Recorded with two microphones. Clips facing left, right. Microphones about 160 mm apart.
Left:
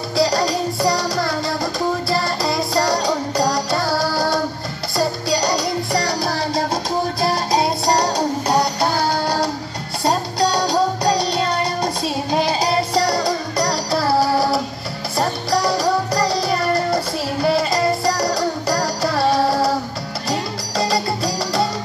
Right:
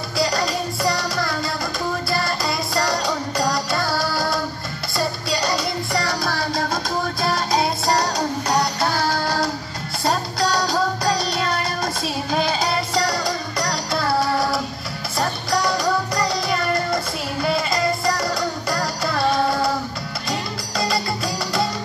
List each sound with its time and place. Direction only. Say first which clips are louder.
0.2 s music: left 4 dB; 30° left (ahead or behind)